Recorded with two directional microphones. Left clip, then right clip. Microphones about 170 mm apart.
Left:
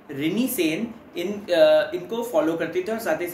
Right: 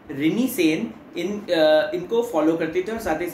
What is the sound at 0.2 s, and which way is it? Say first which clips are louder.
A man's voice: right 3 dB; 5° left (ahead or behind).